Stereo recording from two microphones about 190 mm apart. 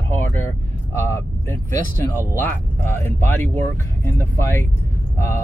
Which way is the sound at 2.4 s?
10° left (ahead or behind).